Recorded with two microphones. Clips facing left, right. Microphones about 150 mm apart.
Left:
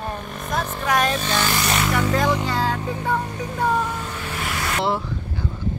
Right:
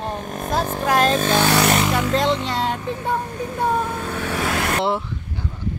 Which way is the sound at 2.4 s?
25° right (ahead or behind).